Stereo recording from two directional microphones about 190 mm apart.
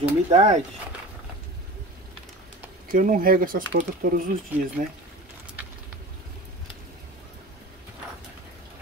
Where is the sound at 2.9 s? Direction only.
45° right (ahead or behind).